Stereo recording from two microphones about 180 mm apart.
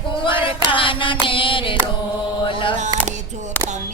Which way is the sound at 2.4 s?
25° left (ahead or behind).